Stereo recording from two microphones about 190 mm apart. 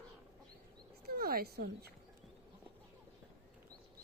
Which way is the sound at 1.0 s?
50° right (ahead or behind).